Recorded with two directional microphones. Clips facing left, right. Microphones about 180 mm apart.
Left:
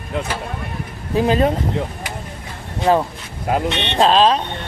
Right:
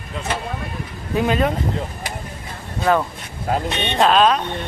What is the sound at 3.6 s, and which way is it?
Speech, 70° left (ahead or behind).